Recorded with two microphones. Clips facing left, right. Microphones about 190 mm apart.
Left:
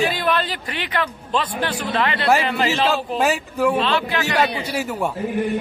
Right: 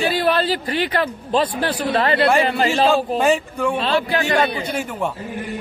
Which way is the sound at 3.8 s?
40° right (ahead or behind).